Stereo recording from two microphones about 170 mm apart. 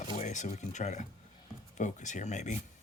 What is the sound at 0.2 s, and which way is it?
Speech, 45° left (ahead or behind).